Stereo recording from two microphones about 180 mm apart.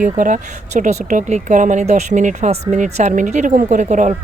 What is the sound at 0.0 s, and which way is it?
Speech, 45° right (ahead or behind).